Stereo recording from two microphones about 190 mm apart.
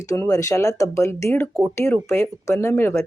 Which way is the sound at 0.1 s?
15° left (ahead or behind).